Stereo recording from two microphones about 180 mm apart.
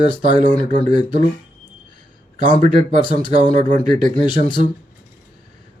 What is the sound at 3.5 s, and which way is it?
Speech, 45° right (ahead or behind).